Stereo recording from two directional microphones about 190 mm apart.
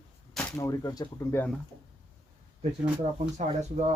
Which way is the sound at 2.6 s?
35° right (ahead or behind).